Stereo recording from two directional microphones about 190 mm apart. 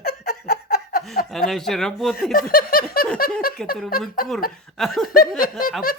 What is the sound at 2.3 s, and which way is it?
Speech, 50° left (ahead or behind).